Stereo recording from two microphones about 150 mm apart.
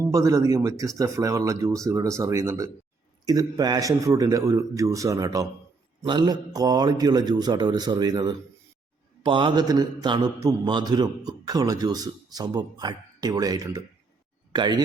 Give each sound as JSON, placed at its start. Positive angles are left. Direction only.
{"t": 0.0, "sound": "speech", "side_deg": -20}